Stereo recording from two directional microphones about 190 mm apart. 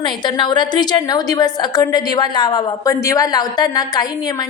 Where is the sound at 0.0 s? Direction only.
25° left (ahead or behind).